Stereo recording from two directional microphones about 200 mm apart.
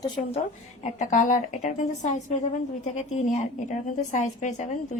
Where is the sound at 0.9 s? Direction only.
40° left (ahead or behind).